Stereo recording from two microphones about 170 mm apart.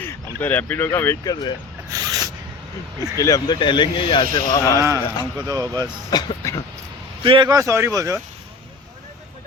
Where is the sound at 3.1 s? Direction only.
20° left (ahead or behind).